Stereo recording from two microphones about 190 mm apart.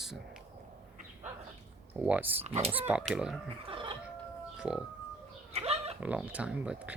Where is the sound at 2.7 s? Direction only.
10° right (ahead or behind).